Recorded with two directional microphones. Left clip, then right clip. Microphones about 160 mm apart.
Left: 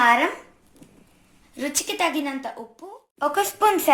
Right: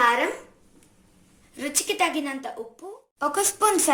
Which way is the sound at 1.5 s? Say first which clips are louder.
Even; 45° left (ahead or behind).